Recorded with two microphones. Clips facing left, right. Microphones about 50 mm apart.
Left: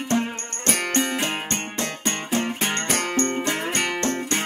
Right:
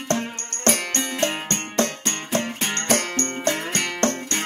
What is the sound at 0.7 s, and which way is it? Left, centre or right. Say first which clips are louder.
Music: even; centre.